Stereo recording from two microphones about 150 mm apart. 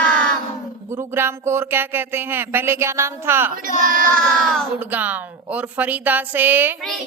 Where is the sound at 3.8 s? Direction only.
60° right (ahead or behind).